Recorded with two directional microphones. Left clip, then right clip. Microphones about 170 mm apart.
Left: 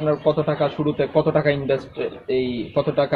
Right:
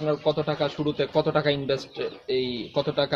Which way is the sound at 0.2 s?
40° right (ahead or behind).